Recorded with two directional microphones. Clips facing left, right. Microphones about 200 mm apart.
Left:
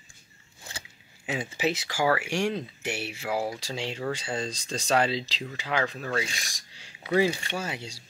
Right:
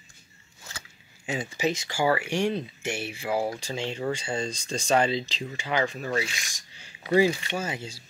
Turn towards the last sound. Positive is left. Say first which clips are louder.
# right 2 dB
turn(degrees=0)  # may be behind; listen again after turning